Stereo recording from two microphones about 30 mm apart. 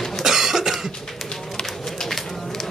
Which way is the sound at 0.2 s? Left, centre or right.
Centre.